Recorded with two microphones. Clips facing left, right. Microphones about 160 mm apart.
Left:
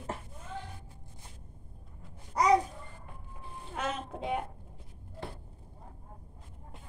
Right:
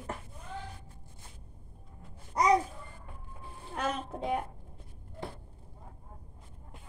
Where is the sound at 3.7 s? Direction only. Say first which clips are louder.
Right 2 dB; 5° left (ahead or behind).